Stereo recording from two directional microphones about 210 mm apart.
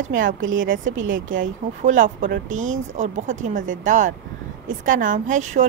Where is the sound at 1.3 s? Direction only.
40° right (ahead or behind).